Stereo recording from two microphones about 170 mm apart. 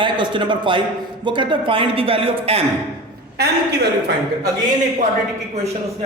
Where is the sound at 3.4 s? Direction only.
75° right (ahead or behind).